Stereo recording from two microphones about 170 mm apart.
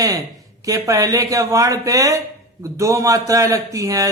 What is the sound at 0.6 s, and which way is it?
Speech, 20° right (ahead or behind).